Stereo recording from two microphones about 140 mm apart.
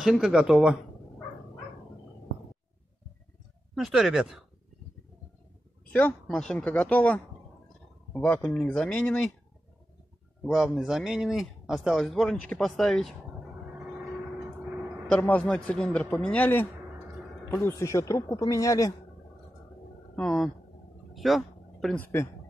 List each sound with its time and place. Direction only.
0.0 s speech: 5° right (ahead or behind)
3.7 s speech: centre (ahead or behind)
5.9 s a man's voice: 10° left (ahead or behind)
10.4 s speech: centre (ahead or behind)
14.6 s vehicle: 10° right (ahead or behind)
15.0 s a man's voice: 10° left (ahead or behind)
20.2 s speech: 5° left (ahead or behind)
21.1 s a sound: centre (ahead or behind)
21.9 s speech: 20° left (ahead or behind)